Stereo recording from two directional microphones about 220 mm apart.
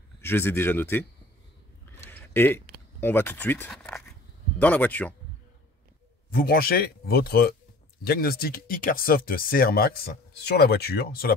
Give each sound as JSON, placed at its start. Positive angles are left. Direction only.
{"t": 0.2, "sound": "speech", "side_deg": 10}
{"t": 2.0, "sound": "speech", "side_deg": 10}
{"t": 6.3, "sound": "speech", "side_deg": 45}